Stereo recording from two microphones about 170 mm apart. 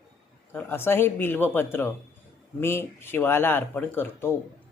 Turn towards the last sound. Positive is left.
turn(degrees=10)  # may be behind; listen again after turning